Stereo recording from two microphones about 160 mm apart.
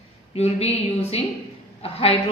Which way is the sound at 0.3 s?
40° left (ahead or behind).